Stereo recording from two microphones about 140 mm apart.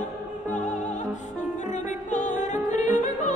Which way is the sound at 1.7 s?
60° left (ahead or behind).